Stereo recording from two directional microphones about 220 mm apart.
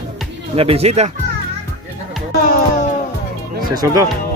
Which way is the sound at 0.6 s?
25° right (ahead or behind).